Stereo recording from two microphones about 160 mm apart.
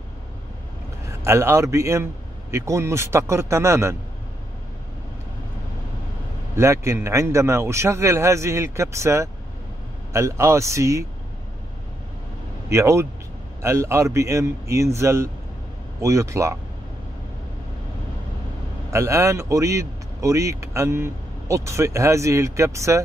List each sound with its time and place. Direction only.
1.2 s a man's voice: 15° right (ahead or behind)
6.5 s a man's voice: 15° right (ahead or behind)
12.6 s a man's voice: 15° right (ahead or behind)
18.9 s a man's voice: 20° right (ahead or behind)